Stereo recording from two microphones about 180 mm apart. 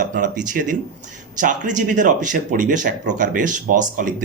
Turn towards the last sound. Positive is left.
turn(degrees=-45)  # may be behind; listen again after turning